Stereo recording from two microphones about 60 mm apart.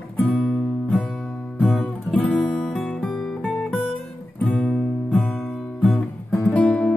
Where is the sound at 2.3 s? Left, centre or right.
Centre.